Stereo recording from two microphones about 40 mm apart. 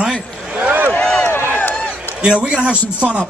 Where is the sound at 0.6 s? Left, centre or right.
Right.